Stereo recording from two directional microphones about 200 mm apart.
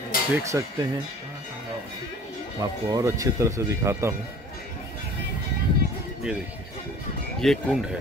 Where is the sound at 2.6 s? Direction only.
15° right (ahead or behind).